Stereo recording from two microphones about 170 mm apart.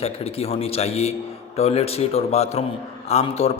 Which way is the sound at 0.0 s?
35° left (ahead or behind).